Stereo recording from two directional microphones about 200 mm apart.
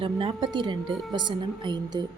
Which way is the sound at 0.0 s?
25° right (ahead or behind).